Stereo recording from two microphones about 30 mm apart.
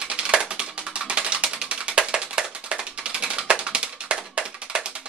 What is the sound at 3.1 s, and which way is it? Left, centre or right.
Music, right.